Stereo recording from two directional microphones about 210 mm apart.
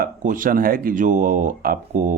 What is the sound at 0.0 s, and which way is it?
Speech, 40° right (ahead or behind).